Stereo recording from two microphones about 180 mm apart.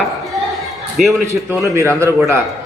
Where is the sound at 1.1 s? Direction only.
15° right (ahead or behind).